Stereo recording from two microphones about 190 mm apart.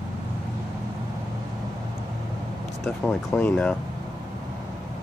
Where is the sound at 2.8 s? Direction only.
5° left (ahead or behind).